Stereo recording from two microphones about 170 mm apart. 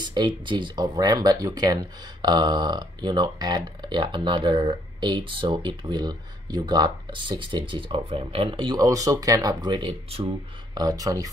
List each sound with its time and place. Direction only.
0.0 s speech: 25° right (ahead or behind)